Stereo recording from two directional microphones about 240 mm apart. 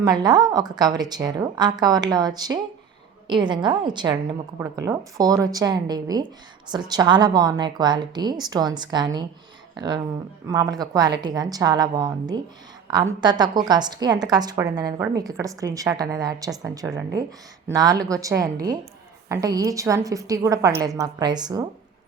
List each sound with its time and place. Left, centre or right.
0.0 s a woman's voice: centre